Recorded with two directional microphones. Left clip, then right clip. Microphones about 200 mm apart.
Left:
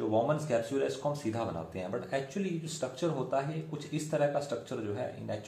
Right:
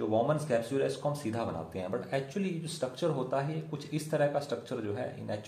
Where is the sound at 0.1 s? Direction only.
25° right (ahead or behind).